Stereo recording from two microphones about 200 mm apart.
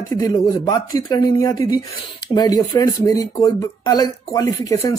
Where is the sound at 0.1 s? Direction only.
15° left (ahead or behind).